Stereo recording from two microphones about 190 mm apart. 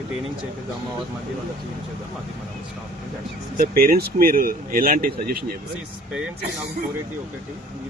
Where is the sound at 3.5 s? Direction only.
50° right (ahead or behind).